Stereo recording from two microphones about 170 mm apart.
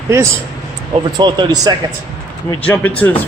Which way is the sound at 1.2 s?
25° right (ahead or behind).